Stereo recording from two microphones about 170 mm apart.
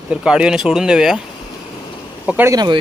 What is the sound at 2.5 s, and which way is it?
Speech, 25° right (ahead or behind).